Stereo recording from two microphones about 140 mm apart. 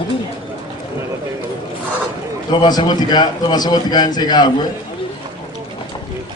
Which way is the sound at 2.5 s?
30° left (ahead or behind).